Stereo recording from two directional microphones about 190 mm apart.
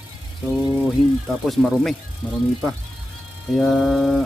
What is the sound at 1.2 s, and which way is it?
Speech, centre (ahead or behind).